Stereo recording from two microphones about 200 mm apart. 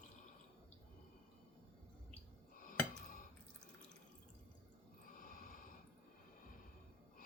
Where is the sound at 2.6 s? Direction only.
40° left (ahead or behind).